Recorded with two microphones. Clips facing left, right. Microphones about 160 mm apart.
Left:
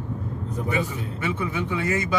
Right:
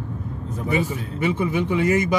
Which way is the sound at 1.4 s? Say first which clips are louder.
Right 7 dB; 15° right (ahead or behind).